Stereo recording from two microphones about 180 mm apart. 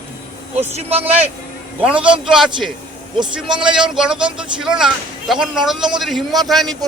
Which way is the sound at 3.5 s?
25° right (ahead or behind).